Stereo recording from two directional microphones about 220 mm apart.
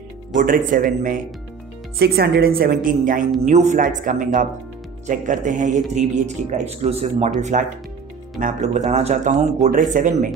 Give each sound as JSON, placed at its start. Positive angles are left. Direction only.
{"t": 0.3, "sound": "speech", "side_deg": -35}